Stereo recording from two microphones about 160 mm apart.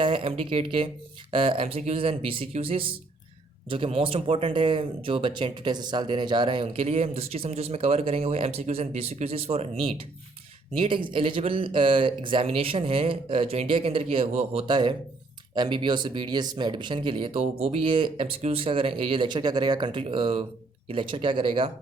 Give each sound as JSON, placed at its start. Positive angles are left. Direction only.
{"t": 0.0, "sound": "speech", "side_deg": -35}